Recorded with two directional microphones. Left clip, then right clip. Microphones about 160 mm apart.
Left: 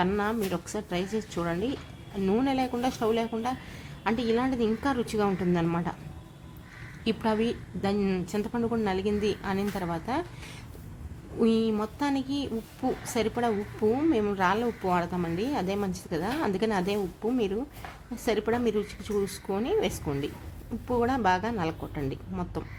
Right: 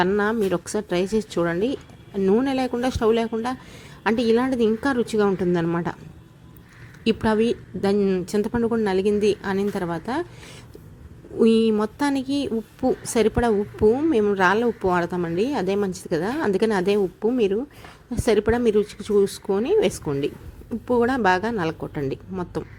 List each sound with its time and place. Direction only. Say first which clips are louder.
0.2 s speech: right 7 dB; 30° right (ahead or behind)
7.0 s speech: right 7 dB; 25° right (ahead or behind)
7.9 s speech: right 9 dB; 15° right (ahead or behind)
11.3 s speech: right 8 dB; 30° right (ahead or behind)